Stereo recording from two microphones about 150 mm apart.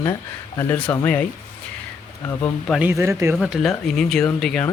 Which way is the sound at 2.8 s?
20° right (ahead or behind).